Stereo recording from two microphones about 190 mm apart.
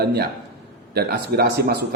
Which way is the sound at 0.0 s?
55° right (ahead or behind).